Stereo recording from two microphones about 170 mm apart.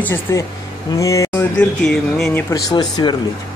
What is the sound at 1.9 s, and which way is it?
Speech, 5° left (ahead or behind).